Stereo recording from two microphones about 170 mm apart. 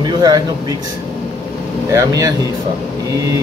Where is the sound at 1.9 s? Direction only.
20° right (ahead or behind).